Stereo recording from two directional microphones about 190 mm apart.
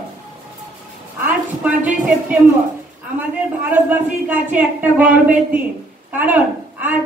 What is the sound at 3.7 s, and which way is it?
A woman's voice, 10° right (ahead or behind).